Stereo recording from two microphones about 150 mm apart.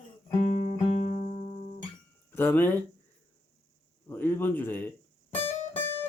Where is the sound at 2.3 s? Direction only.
15° left (ahead or behind).